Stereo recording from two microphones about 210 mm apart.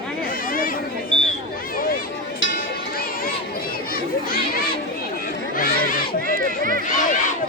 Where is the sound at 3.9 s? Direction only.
45° left (ahead or behind).